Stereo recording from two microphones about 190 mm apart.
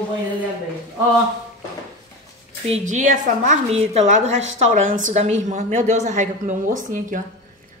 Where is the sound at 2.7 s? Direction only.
40° right (ahead or behind).